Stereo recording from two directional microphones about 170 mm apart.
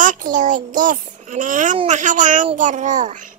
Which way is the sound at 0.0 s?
50° right (ahead or behind).